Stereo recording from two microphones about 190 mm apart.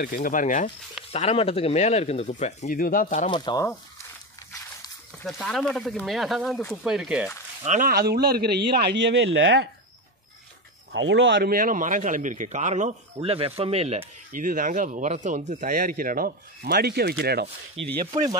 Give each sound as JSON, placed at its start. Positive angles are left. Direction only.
{"t": 0.0, "sound": "speech", "side_deg": 45}
{"t": 1.1, "sound": "speech", "side_deg": 30}
{"t": 3.3, "sound": "speech", "side_deg": 25}
{"t": 5.2, "sound": "speech", "side_deg": 0}
{"t": 7.6, "sound": "speech", "side_deg": -45}
{"t": 10.9, "sound": "speech", "side_deg": -80}
{"t": 11.5, "sound": "a man's voice", "side_deg": -45}
{"t": 14.3, "sound": "speech", "side_deg": -45}